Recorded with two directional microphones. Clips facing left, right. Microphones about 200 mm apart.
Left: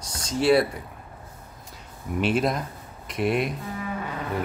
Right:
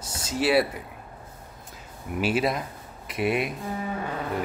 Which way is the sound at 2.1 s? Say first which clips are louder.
Left 1 dB; 5° right (ahead or behind).